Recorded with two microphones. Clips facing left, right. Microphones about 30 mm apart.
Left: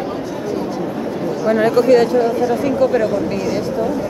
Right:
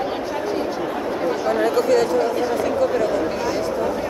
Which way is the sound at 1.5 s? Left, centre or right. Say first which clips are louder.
Left 7 dB; centre.